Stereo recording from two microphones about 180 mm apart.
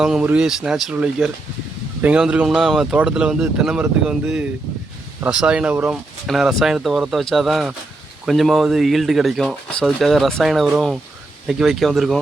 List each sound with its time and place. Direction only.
0.0 s speech: 5° right (ahead or behind)